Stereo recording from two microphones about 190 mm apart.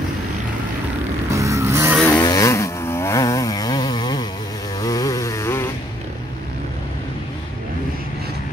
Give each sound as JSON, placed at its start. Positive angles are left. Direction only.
{"t": 1.3, "sound": "vehicle", "side_deg": -15}
{"t": 2.0, "sound": "vehicle", "side_deg": 10}
{"t": 4.7, "sound": "chainsaw", "side_deg": 20}